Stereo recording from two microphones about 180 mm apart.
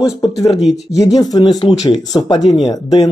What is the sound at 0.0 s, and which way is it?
Speech, 20° left (ahead or behind).